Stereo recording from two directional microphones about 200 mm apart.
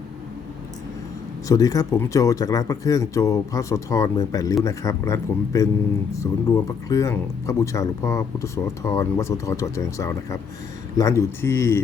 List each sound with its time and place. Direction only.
1.5 s speech: 15° left (ahead or behind)